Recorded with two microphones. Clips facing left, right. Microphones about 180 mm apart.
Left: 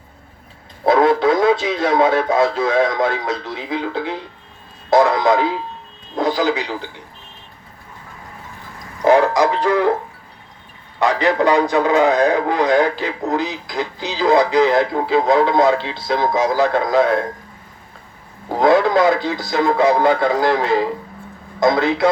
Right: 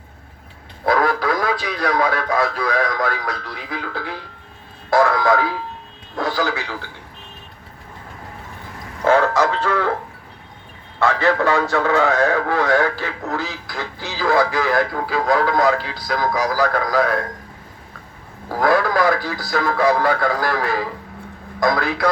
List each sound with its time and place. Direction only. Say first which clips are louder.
0.9 s speech: left 5 dB; 25° left (ahead or behind)
4.9 s a sound: left 2 dB; 20° left (ahead or behind)
6.1 s speech: left 4 dB; 20° left (ahead or behind)
9.0 s speech: left 3 dB; 15° left (ahead or behind)
11.0 s speech: left 2 dB; 15° left (ahead or behind)
18.4 s speech: left 4 dB; 20° left (ahead or behind)